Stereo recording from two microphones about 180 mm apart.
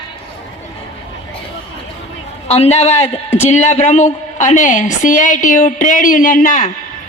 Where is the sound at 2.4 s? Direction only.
35° left (ahead or behind).